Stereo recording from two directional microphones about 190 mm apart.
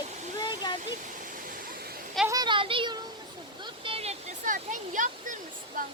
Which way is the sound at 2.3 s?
25° right (ahead or behind).